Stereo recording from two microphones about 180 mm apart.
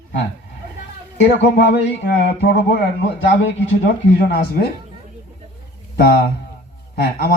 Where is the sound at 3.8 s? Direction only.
65° left (ahead or behind).